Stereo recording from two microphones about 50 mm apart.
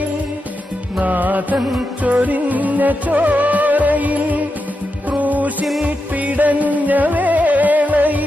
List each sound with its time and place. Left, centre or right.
0.9 s music: right